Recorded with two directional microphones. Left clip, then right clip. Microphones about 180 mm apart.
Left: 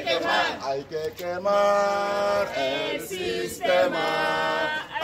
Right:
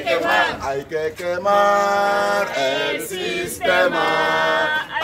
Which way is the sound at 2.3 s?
5° left (ahead or behind).